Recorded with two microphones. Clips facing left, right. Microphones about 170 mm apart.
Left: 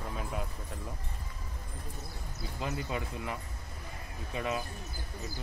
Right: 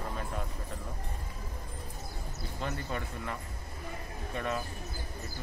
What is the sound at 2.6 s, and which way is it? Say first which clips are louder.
Speech: left 1 dB; 10° left (ahead or behind).